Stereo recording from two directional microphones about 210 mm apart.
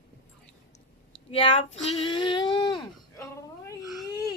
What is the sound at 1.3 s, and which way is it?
Speech, 25° left (ahead or behind).